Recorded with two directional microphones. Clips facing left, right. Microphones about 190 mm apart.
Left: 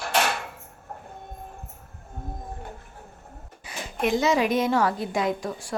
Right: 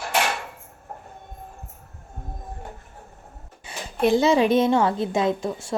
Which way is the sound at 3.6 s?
30° right (ahead or behind).